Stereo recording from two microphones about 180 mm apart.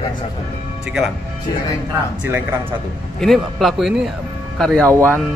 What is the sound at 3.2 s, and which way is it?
A man's voice, centre (ahead or behind).